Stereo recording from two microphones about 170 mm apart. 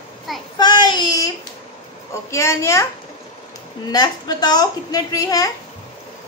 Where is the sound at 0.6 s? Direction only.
25° left (ahead or behind).